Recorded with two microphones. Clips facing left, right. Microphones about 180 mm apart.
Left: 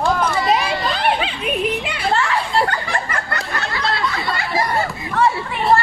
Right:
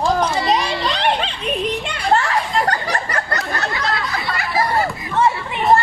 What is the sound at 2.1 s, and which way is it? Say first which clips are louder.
Children playing: right 3 dB; 40° right (ahead or behind).